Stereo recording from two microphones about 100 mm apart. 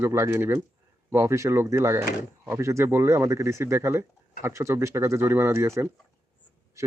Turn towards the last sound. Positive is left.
turn(degrees=-30)  # may be behind; listen again after turning